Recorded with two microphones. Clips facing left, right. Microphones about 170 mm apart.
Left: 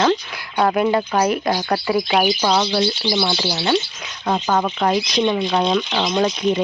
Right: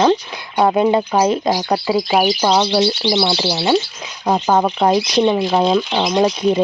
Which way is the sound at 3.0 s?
35° right (ahead or behind).